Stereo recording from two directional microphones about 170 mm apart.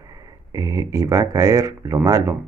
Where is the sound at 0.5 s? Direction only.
20° right (ahead or behind).